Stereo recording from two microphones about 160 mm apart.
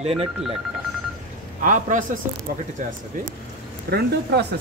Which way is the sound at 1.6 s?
55° right (ahead or behind).